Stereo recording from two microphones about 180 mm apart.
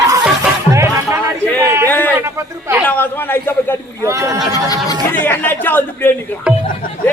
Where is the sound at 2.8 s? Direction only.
10° left (ahead or behind).